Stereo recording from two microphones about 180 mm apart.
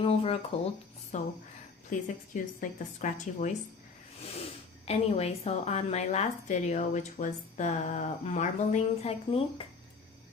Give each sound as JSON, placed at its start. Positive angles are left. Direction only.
{"t": 0.0, "sound": "a woman's voice", "side_deg": 30}
{"t": 4.9, "sound": "a woman's voice", "side_deg": 35}